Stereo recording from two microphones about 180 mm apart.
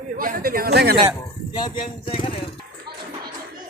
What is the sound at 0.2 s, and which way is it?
Speech, 50° right (ahead or behind).